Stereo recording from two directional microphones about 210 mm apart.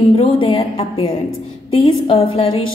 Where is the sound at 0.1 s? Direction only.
25° left (ahead or behind).